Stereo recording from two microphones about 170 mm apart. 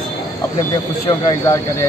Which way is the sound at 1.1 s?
20° left (ahead or behind).